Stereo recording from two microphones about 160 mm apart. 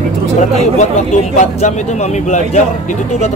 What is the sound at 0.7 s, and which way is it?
Speech, 50° left (ahead or behind).